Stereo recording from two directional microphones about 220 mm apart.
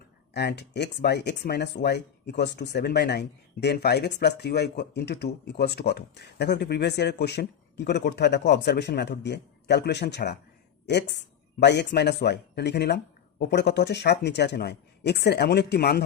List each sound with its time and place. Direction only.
0.3 s speech: 50° left (ahead or behind)
11.6 s speech: 50° left (ahead or behind)